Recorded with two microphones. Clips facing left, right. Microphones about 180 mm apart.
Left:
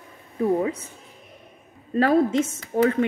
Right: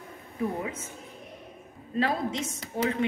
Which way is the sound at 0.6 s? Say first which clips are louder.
Left 9 dB; 35° left (ahead or behind).